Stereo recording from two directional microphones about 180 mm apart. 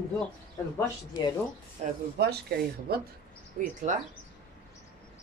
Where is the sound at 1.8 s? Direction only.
35° right (ahead or behind).